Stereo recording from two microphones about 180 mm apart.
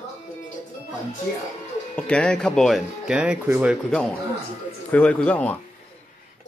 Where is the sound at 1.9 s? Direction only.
5° left (ahead or behind).